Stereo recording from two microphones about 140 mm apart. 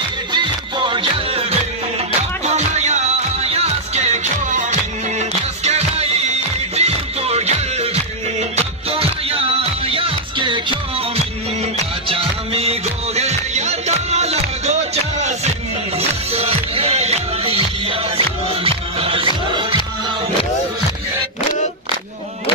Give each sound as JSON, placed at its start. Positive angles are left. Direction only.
{"t": 0.3, "sound": "music", "side_deg": -35}
{"t": 2.4, "sound": "music", "side_deg": -55}